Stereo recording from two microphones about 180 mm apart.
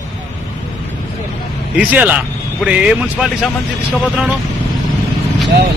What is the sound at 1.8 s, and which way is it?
Speech, 5° right (ahead or behind).